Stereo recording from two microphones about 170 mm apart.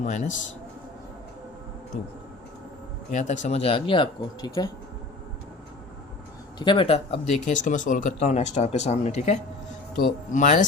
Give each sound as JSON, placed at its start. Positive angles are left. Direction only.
{"t": 0.0, "sound": "speech", "side_deg": 45}
{"t": 3.1, "sound": "speech", "side_deg": 45}
{"t": 6.6, "sound": "speech", "side_deg": 30}
{"t": 9.9, "sound": "speech", "side_deg": 50}